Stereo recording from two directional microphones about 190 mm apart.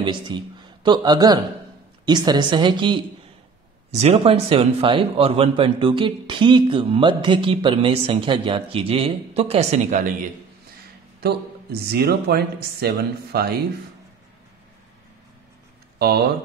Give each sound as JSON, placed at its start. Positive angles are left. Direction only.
{"t": 0.0, "sound": "speech", "side_deg": -25}
{"t": 11.8, "sound": "speech", "side_deg": -55}
{"t": 16.0, "sound": "speech", "side_deg": -55}